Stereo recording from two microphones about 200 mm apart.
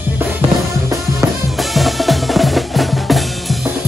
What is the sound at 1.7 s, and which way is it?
Drum, centre (ahead or behind).